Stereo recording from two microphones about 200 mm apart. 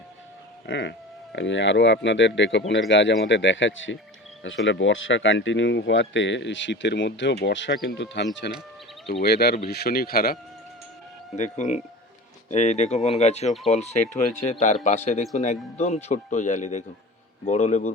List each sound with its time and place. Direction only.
0.7 s speech: 60° left (ahead or behind)
11.3 s speech: 35° left (ahead or behind)